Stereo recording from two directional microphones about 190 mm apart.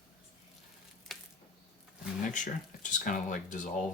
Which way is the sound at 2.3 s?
40° left (ahead or behind).